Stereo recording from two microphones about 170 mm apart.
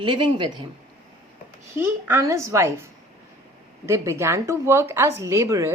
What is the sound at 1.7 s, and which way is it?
Speech, 15° right (ahead or behind).